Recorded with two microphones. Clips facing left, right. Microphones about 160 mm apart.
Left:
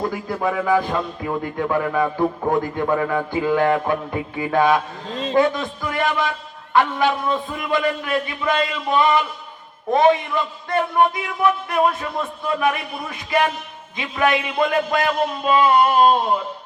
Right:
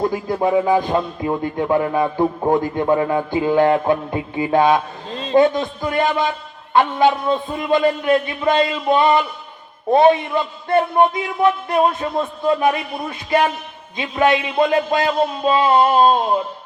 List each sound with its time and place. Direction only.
0.1 s a man's voice: 25° right (ahead or behind)